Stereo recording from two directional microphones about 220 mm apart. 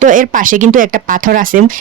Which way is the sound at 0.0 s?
35° right (ahead or behind).